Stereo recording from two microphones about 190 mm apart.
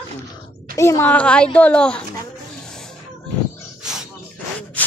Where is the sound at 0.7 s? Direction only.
15° left (ahead or behind).